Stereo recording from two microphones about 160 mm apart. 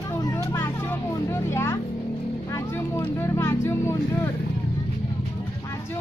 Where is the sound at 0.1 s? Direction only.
20° left (ahead or behind).